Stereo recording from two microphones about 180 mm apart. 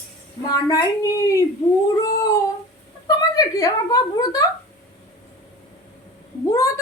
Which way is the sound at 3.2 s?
20° left (ahead or behind).